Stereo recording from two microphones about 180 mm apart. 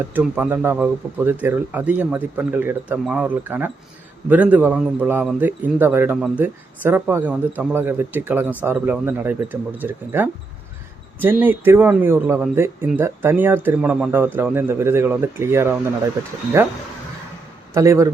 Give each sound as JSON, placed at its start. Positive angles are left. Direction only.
{"t": 0.0, "sound": "speech", "side_deg": -10}
{"t": 17.7, "sound": "speech", "side_deg": -15}